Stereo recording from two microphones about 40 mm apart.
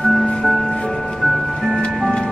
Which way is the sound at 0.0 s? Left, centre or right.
Centre.